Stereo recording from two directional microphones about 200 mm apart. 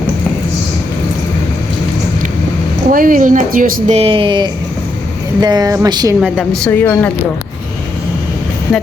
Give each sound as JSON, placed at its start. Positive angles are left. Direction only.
{"t": 2.9, "sound": "speech", "side_deg": -45}
{"t": 6.1, "sound": "a woman's voice", "side_deg": 0}
{"t": 6.7, "sound": "a woman's voice", "side_deg": 10}